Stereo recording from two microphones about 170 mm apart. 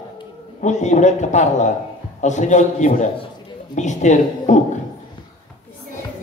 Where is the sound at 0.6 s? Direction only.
45° left (ahead or behind).